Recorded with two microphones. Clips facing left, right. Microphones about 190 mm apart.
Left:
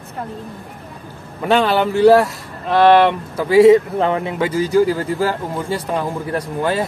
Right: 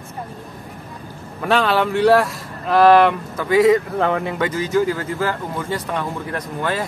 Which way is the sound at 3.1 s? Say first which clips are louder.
Left 2 dB; 30° left (ahead or behind).